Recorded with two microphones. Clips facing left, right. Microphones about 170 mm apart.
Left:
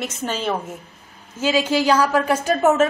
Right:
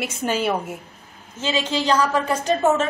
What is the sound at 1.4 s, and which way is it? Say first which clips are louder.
A woman's voice: left 4 dB; 10° left (ahead or behind).